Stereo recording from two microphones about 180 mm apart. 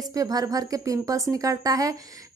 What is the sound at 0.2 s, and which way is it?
A woman's voice, 20° right (ahead or behind).